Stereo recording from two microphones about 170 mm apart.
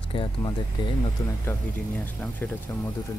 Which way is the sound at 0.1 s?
30° left (ahead or behind).